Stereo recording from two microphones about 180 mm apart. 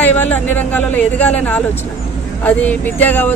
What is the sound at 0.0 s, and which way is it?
A woman's voice, 10° left (ahead or behind).